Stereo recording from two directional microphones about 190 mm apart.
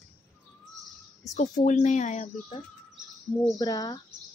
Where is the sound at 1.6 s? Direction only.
40° left (ahead or behind).